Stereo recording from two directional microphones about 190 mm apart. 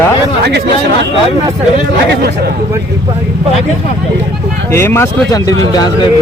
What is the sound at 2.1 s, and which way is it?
Speech, 55° right (ahead or behind).